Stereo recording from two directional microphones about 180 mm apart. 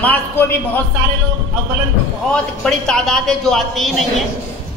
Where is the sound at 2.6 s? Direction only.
5° left (ahead or behind).